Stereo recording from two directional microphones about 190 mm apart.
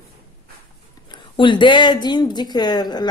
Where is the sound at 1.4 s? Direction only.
25° left (ahead or behind).